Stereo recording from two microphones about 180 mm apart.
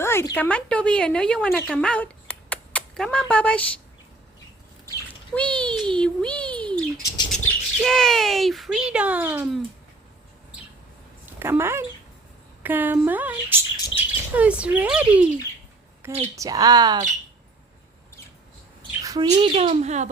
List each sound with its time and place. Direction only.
0.0 s speech: 15° left (ahead or behind)
5.3 s speech: 5° left (ahead or behind); by 9.5 s 10° right (ahead or behind)
11.3 s speech: 15° right (ahead or behind)
16.3 s a woman's voice: 20° right (ahead or behind)
18.8 s a sound: 20° right (ahead or behind)
19.3 s speech: 30° right (ahead or behind)